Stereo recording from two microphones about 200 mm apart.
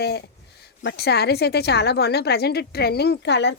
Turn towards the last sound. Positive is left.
turn(degrees=60)  # may be behind; listen again after turning